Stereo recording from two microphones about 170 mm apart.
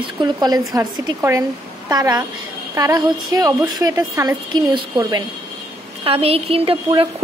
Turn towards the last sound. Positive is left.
turn(degrees=-30)  # may be behind; listen again after turning